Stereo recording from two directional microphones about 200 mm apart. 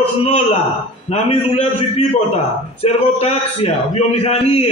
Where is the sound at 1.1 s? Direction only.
30° left (ahead or behind).